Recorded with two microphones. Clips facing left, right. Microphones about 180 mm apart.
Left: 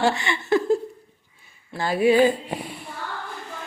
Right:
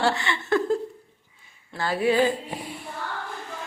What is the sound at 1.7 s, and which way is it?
Speech, 15° left (ahead or behind).